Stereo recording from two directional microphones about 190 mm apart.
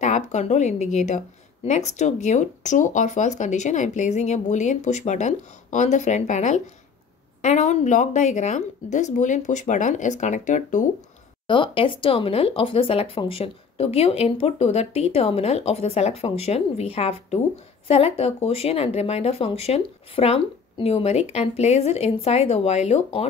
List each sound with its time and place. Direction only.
0.0 s speech: 40° left (ahead or behind)
11.4 s speech: 25° left (ahead or behind)